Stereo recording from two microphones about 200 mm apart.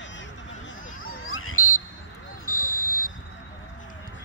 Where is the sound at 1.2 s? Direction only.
90° left.